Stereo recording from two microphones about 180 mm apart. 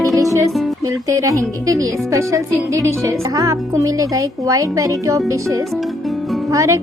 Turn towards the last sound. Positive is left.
turn(degrees=-15)  # may be behind; listen again after turning